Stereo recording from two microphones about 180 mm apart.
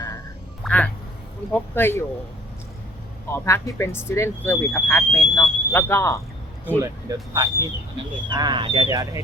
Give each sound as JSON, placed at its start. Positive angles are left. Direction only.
{"t": 0.6, "sound": "quack", "side_deg": 10}
{"t": 1.5, "sound": "speech", "side_deg": 10}
{"t": 3.3, "sound": "speech", "side_deg": 15}
{"t": 6.7, "sound": "speech", "side_deg": -15}